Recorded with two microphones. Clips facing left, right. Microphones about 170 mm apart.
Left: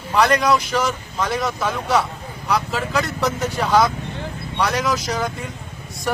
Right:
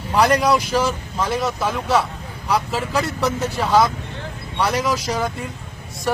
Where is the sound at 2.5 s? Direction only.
30° right (ahead or behind).